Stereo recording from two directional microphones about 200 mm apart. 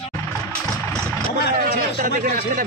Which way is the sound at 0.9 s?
5° left (ahead or behind).